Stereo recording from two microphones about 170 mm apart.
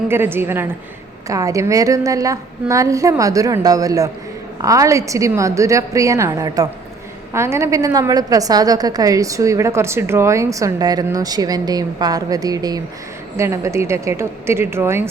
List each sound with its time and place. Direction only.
0.1 s a woman's voice: 15° right (ahead or behind)